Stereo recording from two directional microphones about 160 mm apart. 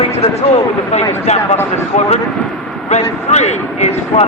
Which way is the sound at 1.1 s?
45° left (ahead or behind).